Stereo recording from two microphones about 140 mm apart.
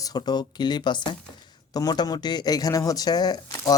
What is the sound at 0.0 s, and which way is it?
Speech, 30° left (ahead or behind).